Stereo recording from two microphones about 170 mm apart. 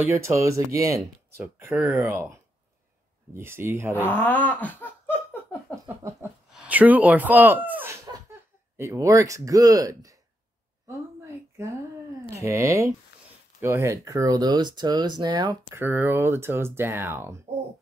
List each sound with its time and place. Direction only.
0.0 s speech: 15° right (ahead or behind)
3.3 s speech: 15° right (ahead or behind)
4.0 s laughter: 10° left (ahead or behind)
6.5 s speech: 5° right (ahead or behind)
10.9 s a sound: 15° right (ahead or behind)
12.3 s speech: 15° right (ahead or behind)
15.8 s speech: 10° right (ahead or behind)